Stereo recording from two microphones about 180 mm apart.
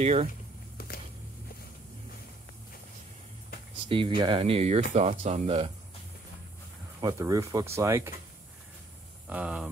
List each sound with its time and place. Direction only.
0.0 s speech: 35° right (ahead or behind)
0.7 s a sound: 60° left (ahead or behind)
3.9 s speech: 30° right (ahead or behind)
7.0 s speech: 20° right (ahead or behind)
9.3 s speech: 5° right (ahead or behind)